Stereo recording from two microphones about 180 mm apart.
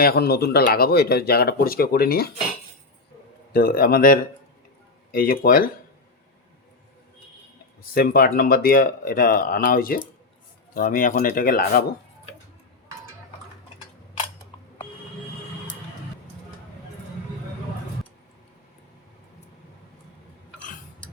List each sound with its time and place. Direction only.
0.0 s speech: 60° left (ahead or behind)
3.5 s speech: 55° left (ahead or behind)
7.9 s speech: 55° left (ahead or behind)